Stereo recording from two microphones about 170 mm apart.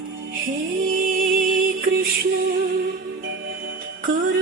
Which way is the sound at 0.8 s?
55° right (ahead or behind).